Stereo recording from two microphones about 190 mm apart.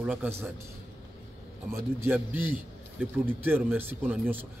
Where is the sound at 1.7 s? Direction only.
10° right (ahead or behind).